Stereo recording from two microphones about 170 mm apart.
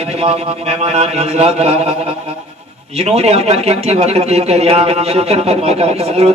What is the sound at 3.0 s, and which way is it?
A man's voice, 40° right (ahead or behind).